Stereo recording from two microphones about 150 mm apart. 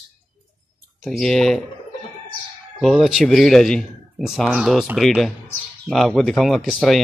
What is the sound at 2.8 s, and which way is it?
Speech, centre (ahead or behind).